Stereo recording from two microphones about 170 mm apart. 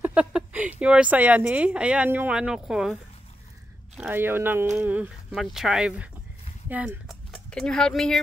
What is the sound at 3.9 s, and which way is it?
Speech, 10° right (ahead or behind).